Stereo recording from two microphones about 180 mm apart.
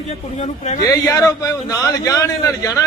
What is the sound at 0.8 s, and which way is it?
A man's voice, 20° left (ahead or behind).